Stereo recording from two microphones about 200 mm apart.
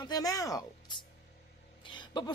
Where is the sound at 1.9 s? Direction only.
25° left (ahead or behind).